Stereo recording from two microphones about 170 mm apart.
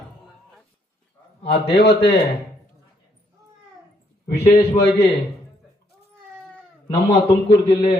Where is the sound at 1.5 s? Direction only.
90° left.